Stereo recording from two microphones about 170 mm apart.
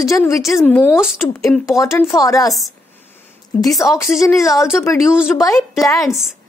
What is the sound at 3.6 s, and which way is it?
Speech, 20° left (ahead or behind).